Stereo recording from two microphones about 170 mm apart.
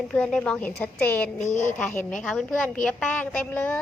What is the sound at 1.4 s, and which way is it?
Speech, 45° left (ahead or behind).